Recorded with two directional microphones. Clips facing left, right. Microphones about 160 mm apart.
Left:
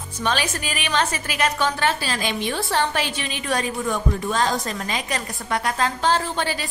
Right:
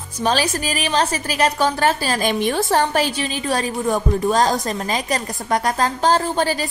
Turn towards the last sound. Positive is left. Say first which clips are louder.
# right 4 dB
turn(degrees=-40)  # may be behind; listen again after turning